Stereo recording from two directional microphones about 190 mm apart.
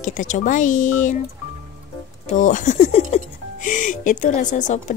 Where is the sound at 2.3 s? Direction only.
40° left (ahead or behind).